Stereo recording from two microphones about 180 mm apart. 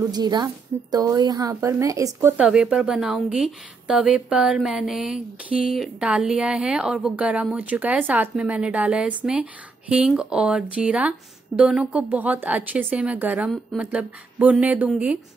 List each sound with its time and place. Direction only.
0.0 s speech: 20° right (ahead or behind)
2.3 s a woman's voice: 5° right (ahead or behind)